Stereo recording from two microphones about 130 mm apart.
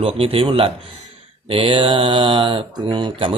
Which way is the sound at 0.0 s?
45° right (ahead or behind).